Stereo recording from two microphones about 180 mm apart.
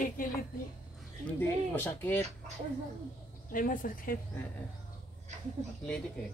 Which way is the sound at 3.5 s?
50° left (ahead or behind).